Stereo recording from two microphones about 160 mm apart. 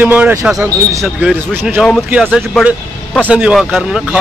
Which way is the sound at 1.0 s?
5° right (ahead or behind).